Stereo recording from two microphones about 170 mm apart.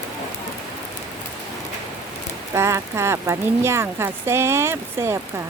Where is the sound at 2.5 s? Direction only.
15° right (ahead or behind).